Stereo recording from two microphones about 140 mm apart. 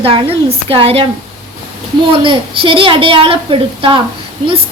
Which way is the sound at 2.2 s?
40° right (ahead or behind).